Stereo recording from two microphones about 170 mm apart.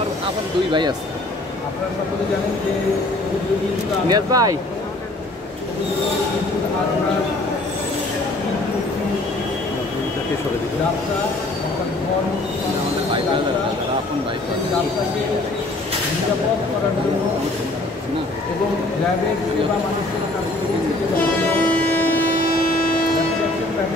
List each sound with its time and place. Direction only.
4.1 s speech: 20° right (ahead or behind)
22.3 s train: 60° left (ahead or behind)